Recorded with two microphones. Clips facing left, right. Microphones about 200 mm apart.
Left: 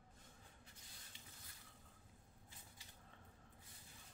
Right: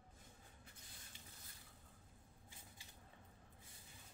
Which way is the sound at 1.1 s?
45° right (ahead or behind).